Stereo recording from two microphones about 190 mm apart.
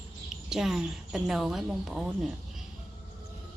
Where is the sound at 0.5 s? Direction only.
Centre (ahead or behind).